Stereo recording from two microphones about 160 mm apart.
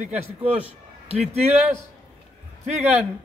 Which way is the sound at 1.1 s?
40° right (ahead or behind).